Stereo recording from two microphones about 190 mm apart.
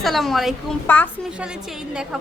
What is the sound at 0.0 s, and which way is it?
A woman's voice, centre (ahead or behind).